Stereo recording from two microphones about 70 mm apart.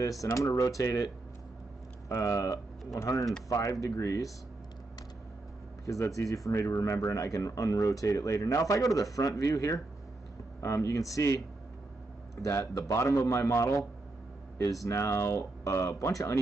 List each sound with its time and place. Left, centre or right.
0.2 s speech: left
5.9 s speech: left
14.9 s speech: left